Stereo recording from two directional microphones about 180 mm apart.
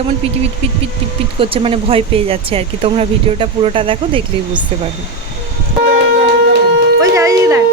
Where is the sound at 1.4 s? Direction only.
30° right (ahead or behind).